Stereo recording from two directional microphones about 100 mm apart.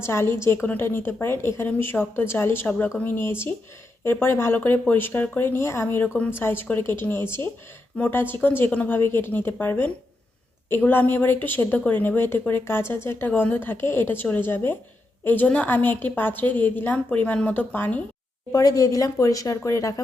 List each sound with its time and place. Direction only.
0.0 s a woman's voice: 25° left (ahead or behind)
18.5 s speech: 35° left (ahead or behind)